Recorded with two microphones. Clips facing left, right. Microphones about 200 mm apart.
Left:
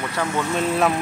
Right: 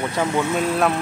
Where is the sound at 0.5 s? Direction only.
5° right (ahead or behind).